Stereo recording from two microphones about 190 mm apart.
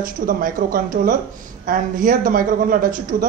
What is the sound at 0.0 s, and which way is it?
A man's voice, 45° right (ahead or behind).